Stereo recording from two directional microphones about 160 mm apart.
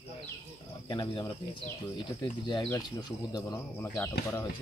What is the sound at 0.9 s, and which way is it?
Speech, 30° left (ahead or behind).